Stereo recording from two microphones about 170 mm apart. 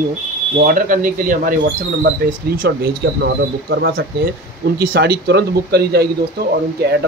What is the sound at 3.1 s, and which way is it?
Speech, 90° right.